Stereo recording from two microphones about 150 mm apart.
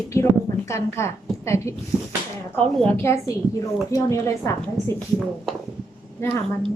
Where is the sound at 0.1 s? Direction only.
20° left (ahead or behind).